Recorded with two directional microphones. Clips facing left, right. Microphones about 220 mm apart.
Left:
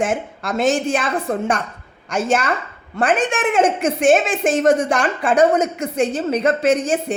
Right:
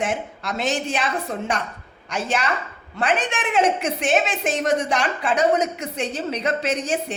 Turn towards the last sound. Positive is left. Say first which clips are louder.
# left 7 dB
turn(degrees=50)  # may be behind; listen again after turning